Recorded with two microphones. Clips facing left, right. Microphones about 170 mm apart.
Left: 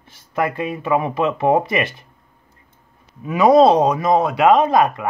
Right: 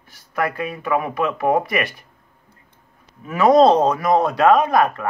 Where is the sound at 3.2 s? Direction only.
15° left (ahead or behind).